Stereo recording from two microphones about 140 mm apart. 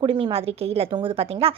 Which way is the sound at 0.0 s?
40° right (ahead or behind).